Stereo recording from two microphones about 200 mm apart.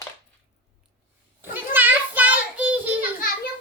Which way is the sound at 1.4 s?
10° right (ahead or behind).